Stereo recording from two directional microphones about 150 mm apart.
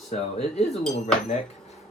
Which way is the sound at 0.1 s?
45° left (ahead or behind).